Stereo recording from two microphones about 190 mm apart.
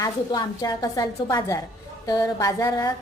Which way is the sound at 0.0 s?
20° left (ahead or behind).